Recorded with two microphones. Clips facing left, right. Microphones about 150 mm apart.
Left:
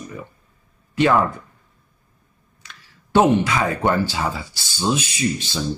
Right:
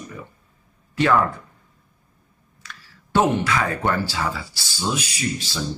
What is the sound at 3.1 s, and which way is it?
Speech, 20° left (ahead or behind).